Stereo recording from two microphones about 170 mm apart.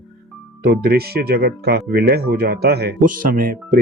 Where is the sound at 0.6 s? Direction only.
75° right (ahead or behind).